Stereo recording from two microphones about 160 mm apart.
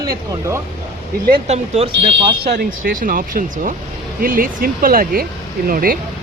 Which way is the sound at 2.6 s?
60° right (ahead or behind).